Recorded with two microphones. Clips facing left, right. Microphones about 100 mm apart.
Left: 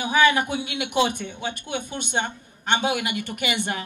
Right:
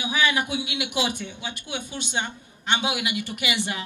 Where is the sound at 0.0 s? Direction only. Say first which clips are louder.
Left 5 dB; 45° left (ahead or behind).